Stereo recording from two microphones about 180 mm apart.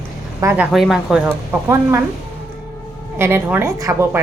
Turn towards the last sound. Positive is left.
turn(degrees=-15)  # may be behind; listen again after turning